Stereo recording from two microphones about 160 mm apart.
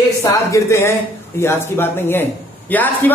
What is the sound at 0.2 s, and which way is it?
Speech, 20° left (ahead or behind).